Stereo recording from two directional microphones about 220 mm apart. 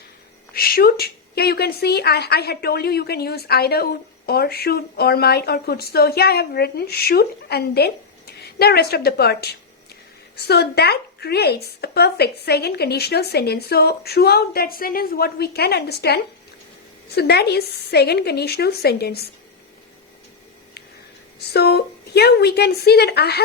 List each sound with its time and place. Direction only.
0.5 s a woman's voice: 45° left (ahead or behind)
21.5 s a woman's voice: 45° left (ahead or behind)